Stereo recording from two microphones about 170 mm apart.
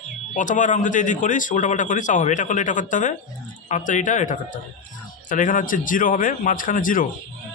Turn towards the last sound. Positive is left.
turn(degrees=55)  # may be behind; listen again after turning